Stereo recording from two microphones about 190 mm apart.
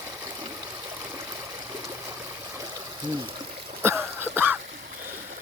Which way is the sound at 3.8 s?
10° right (ahead or behind).